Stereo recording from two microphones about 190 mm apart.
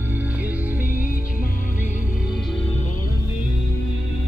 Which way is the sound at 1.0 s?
45° left (ahead or behind).